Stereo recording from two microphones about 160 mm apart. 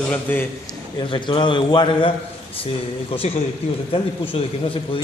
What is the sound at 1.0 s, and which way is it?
A man's voice, 30° left (ahead or behind).